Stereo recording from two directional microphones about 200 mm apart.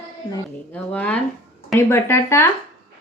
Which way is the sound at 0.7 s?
5° left (ahead or behind).